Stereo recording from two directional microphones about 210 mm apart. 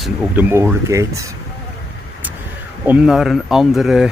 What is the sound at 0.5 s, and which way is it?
Speech, 15° right (ahead or behind).